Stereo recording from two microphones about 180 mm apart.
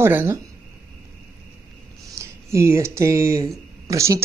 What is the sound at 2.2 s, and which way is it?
Speech, 15° right (ahead or behind).